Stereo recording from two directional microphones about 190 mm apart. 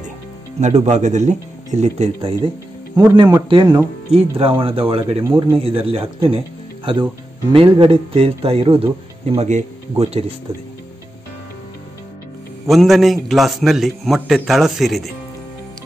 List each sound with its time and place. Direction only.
0.6 s speech: 35° right (ahead or behind)
3.2 s speech: 15° right (ahead or behind)
3.4 s speech: 25° right (ahead or behind)
12.6 s a man's voice: centre (ahead or behind)